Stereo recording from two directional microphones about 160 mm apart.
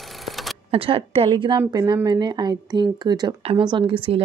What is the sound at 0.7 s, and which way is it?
Speech, 35° right (ahead or behind).